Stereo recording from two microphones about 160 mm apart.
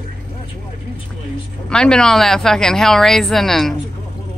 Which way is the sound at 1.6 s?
5° left (ahead or behind).